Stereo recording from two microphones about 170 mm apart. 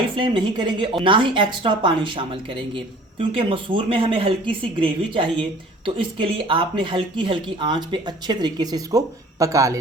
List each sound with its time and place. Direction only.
0.2 s speech: 30° right (ahead or behind)